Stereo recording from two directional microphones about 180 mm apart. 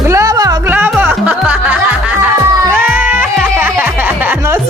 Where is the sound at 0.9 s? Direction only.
10° right (ahead or behind).